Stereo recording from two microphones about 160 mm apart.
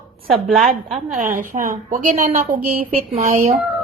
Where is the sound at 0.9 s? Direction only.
45° right (ahead or behind).